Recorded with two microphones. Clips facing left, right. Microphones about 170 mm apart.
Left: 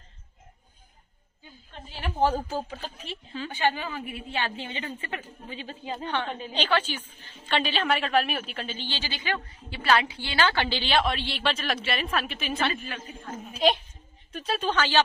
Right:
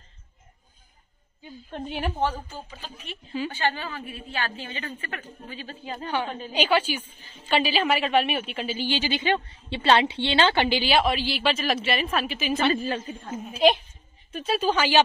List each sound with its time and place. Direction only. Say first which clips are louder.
1.7 s a woman's voice: right 11 dB; 55° right (ahead or behind)
2.1 s a woman's voice: left 5 dB; 35° left (ahead or behind)
3.5 s a woman's voice: left 1 dB; 15° left (ahead or behind)
6.0 s a woman's voice: right 3 dB; 10° right (ahead or behind)
12.7 s a woman's voice: right 9 dB; 35° right (ahead or behind)
13.5 s a woman's voice: right 4 dB; centre (ahead or behind)